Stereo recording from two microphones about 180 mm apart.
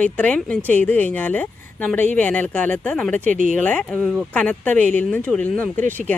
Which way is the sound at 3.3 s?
45° right (ahead or behind).